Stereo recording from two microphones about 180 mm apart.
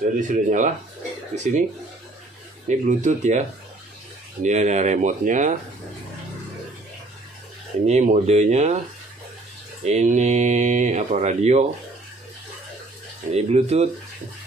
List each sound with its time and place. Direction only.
0.2 s speech: 45° right (ahead or behind)
2.7 s speech: 45° right (ahead or behind)
7.8 s speech: 40° right (ahead or behind)
9.8 s speech: 40° right (ahead or behind)
13.3 s speech: 35° right (ahead or behind)